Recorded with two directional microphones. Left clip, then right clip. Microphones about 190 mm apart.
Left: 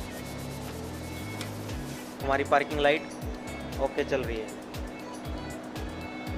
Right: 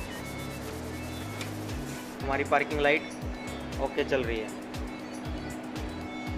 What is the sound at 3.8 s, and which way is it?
Speech, centre (ahead or behind).